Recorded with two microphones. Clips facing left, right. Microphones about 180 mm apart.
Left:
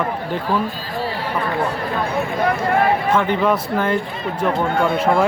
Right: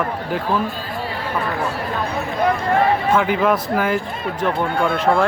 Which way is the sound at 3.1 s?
5° right (ahead or behind).